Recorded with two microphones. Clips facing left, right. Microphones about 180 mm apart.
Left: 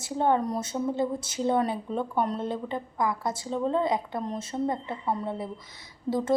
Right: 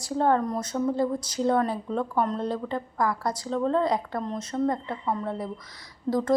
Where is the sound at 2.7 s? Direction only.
20° left (ahead or behind).